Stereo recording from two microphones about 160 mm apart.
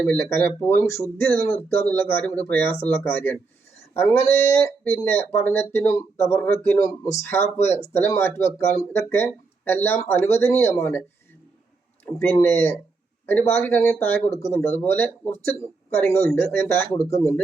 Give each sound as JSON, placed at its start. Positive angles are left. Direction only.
{"t": 0.0, "sound": "speech", "side_deg": 15}
{"t": 12.2, "sound": "speech", "side_deg": 10}
{"t": 17.0, "sound": "speech", "side_deg": 40}